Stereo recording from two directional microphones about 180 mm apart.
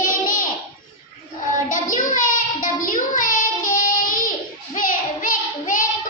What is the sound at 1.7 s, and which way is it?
Child singing, 45° left (ahead or behind).